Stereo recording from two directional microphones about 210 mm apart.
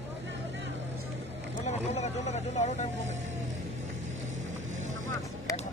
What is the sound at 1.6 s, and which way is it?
Speech, 35° left (ahead or behind).